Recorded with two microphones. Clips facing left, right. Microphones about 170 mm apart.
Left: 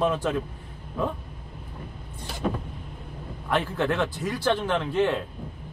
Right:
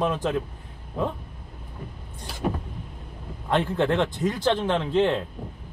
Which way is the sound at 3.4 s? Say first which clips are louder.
Right 3 dB; 20° right (ahead or behind).